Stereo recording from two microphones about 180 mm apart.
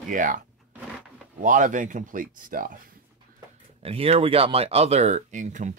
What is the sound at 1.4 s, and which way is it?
Speech, 45° right (ahead or behind).